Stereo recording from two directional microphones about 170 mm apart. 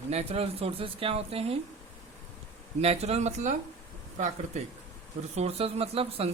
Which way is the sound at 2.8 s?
40° right (ahead or behind).